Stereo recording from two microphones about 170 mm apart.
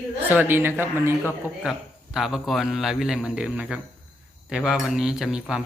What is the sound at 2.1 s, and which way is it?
Speech, centre (ahead or behind).